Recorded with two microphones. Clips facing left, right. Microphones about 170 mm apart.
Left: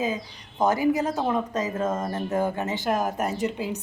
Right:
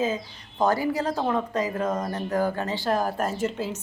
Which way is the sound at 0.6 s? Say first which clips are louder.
Left 2 dB; 15° left (ahead or behind).